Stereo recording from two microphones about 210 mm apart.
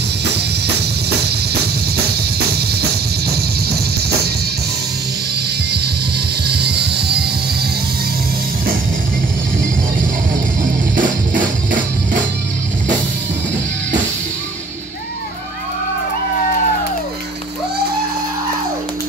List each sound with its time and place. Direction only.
2.4 s drum kit: 50° right (ahead or behind)
6.4 s music: 50° right (ahead or behind)
10.6 s music: 40° right (ahead or behind)